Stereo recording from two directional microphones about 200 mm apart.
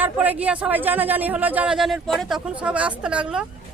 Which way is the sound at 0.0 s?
10° right (ahead or behind).